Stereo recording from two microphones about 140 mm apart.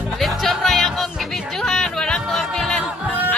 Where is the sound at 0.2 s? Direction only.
Centre (ahead or behind).